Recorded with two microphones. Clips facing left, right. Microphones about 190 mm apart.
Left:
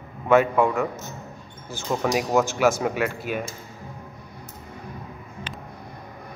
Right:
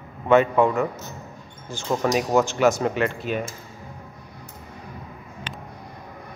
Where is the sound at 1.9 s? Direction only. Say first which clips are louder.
Right 2 dB; 25° right (ahead or behind).